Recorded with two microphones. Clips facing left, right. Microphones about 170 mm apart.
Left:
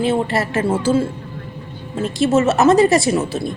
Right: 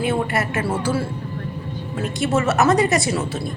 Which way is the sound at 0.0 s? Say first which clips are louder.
Left 3 dB; 25° left (ahead or behind).